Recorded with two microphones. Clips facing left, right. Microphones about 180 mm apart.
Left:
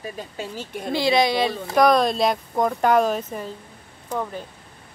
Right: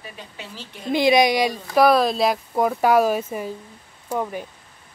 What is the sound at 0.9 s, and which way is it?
Speech, 15° right (ahead or behind).